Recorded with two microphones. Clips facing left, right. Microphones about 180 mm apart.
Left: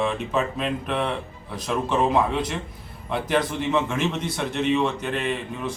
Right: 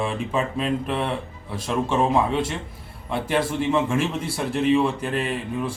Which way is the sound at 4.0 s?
30° right (ahead or behind).